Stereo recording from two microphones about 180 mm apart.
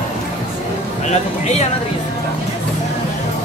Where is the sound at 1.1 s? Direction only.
40° left (ahead or behind).